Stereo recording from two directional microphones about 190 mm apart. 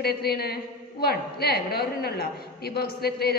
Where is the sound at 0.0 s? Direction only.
55° left (ahead or behind).